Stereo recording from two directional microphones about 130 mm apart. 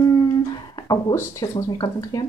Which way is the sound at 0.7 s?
30° left (ahead or behind).